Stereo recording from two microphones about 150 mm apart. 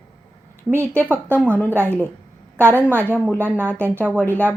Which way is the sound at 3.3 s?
15° right (ahead or behind).